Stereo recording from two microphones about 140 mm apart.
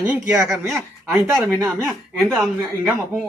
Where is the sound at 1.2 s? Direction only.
20° right (ahead or behind).